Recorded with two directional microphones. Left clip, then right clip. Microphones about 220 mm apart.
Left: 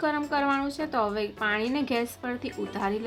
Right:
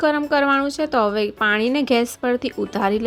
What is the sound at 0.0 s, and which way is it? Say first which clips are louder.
A woman's voice: right 8 dB; 35° right (ahead or behind).